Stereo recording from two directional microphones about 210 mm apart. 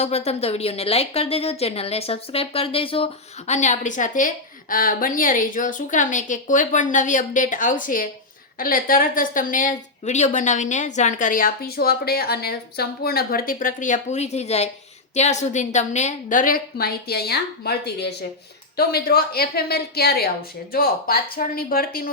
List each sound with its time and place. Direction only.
0.0 s a woman's voice: 30° left (ahead or behind)